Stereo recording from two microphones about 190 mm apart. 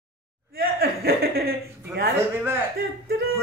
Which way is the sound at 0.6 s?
55° right (ahead or behind).